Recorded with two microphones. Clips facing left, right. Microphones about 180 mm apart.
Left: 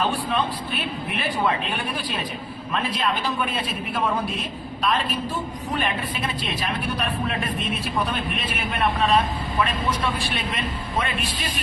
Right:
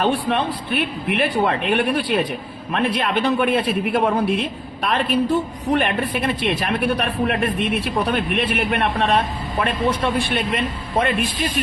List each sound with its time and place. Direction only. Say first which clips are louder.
0.0 s a man's voice: right 4 dB; 70° right (ahead or behind)